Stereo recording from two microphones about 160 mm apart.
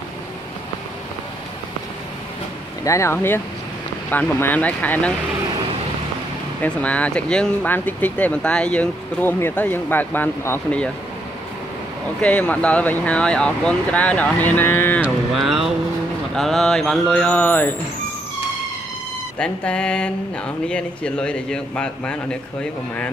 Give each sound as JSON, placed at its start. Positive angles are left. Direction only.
{"t": 2.8, "sound": "speech", "side_deg": 20}
{"t": 6.6, "sound": "speech", "side_deg": 10}
{"t": 12.2, "sound": "speech", "side_deg": 10}
{"t": 15.3, "sound": "speech", "side_deg": 0}
{"t": 19.3, "sound": "speech", "side_deg": 10}